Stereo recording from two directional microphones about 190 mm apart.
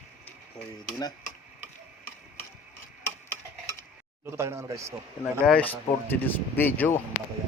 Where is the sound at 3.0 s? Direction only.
10° left (ahead or behind).